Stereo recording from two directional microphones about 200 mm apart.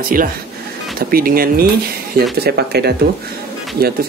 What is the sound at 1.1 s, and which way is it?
Speech, 45° right (ahead or behind).